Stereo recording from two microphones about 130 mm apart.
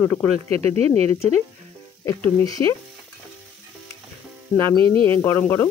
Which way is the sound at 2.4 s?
30° left (ahead or behind).